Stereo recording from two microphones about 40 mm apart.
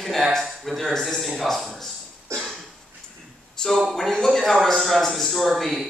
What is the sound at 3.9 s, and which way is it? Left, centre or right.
A man's voice, centre.